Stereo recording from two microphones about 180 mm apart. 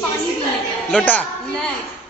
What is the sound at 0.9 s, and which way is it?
Speech, 5° left (ahead or behind).